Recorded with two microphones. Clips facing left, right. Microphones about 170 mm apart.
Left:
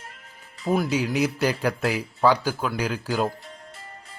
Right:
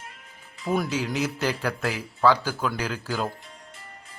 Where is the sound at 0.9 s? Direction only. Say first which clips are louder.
Left 4 dB; 15° left (ahead or behind).